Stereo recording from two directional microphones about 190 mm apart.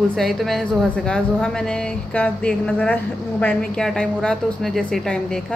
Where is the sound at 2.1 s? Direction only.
5° left (ahead or behind).